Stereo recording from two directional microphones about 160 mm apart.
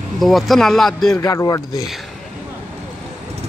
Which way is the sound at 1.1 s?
20° left (ahead or behind).